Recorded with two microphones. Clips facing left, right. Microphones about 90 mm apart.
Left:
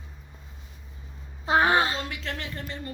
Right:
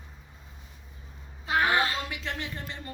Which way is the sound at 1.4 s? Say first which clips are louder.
Left 4 dB; 25° left (ahead or behind).